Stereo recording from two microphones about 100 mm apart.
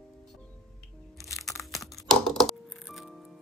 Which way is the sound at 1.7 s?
Centre (ahead or behind).